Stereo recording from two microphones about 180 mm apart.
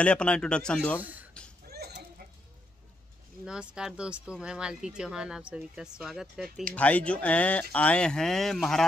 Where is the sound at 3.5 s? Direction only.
5° right (ahead or behind).